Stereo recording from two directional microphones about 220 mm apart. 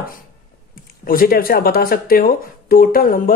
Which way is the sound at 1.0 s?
40° left (ahead or behind).